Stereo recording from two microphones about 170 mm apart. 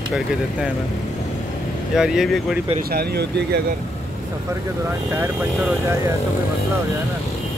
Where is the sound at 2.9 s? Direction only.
70° right (ahead or behind).